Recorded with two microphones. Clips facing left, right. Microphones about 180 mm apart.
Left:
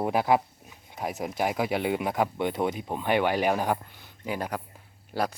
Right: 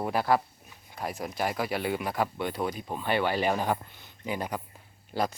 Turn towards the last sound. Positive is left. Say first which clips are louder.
# left 1 dB
turn(degrees=10)  # may be behind; listen again after turning